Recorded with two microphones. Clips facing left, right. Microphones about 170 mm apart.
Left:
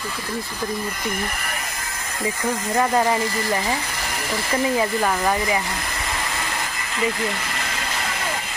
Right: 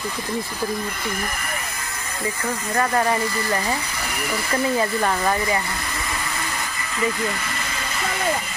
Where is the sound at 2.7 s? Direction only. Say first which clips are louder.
Left 1 dB; 20° left (ahead or behind).